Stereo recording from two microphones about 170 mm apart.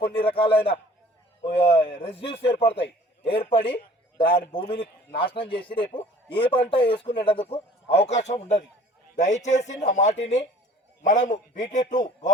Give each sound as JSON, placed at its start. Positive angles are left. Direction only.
{"t": 0.0, "sound": "a man's voice", "side_deg": 30}